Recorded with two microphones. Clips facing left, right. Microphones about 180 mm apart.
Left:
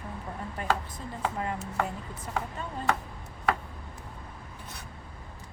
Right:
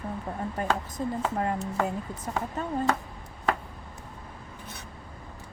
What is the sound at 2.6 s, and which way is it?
Speech, 40° right (ahead or behind).